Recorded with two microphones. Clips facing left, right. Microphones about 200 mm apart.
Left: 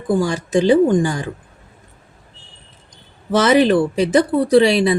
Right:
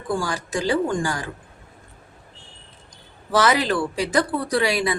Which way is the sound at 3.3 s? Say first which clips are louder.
Left 7 dB; 25° left (ahead or behind).